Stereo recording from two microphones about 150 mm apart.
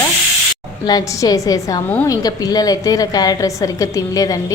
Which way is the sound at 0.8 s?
25° left (ahead or behind).